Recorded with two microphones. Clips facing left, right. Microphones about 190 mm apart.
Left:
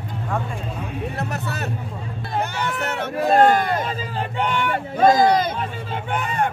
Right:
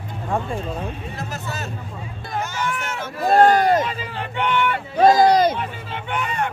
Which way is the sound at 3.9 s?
40° left (ahead or behind).